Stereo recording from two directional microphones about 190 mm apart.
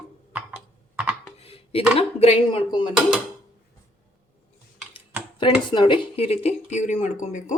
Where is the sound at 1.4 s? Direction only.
30° left (ahead or behind).